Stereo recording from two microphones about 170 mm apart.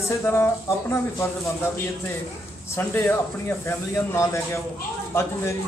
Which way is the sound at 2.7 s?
15° left (ahead or behind).